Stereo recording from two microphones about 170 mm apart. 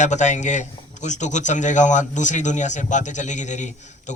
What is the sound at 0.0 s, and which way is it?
A man's voice, 45° left (ahead or behind).